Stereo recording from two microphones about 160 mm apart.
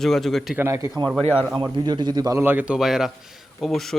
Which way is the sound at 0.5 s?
15° right (ahead or behind).